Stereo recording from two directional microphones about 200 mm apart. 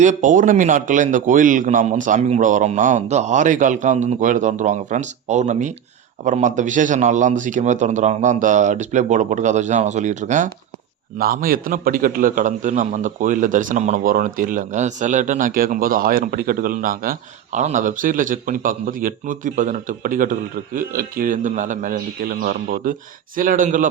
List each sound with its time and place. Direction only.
0.0 s a man's voice: 40° right (ahead or behind)